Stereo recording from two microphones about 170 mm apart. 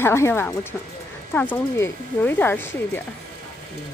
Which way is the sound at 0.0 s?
15° left (ahead or behind).